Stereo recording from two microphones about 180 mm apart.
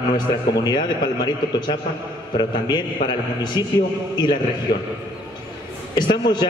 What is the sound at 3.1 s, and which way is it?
Speech, 25° left (ahead or behind).